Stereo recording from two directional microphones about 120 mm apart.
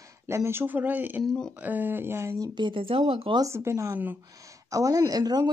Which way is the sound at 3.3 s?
25° right (ahead or behind).